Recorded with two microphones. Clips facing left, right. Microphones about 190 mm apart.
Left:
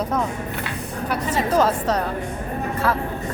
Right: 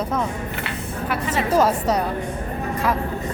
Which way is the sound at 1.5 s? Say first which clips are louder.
Right 2 dB; 10° right (ahead or behind).